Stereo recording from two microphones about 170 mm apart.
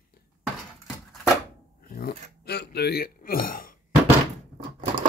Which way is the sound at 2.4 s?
75° left (ahead or behind).